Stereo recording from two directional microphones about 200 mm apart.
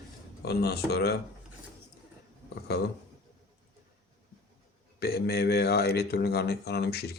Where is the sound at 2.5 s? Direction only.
55° left (ahead or behind).